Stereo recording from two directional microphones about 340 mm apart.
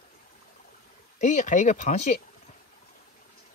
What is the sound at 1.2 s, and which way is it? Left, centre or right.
Speech, left.